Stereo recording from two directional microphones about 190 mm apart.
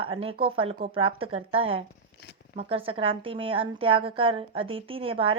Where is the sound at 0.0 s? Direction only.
30° right (ahead or behind).